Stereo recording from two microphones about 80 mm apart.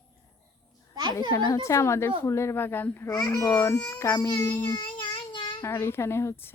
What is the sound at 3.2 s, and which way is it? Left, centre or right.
Speech, left.